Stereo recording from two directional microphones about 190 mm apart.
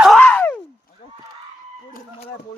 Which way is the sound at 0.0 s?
5° left (ahead or behind).